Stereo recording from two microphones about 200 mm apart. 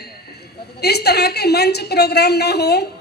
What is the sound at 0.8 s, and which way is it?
A woman's voice, 55° left (ahead or behind).